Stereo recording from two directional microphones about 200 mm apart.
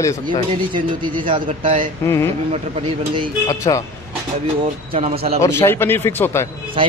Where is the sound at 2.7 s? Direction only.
25° right (ahead or behind).